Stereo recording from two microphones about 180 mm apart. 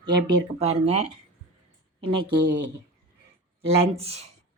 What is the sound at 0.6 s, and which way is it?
Speech, 35° right (ahead or behind).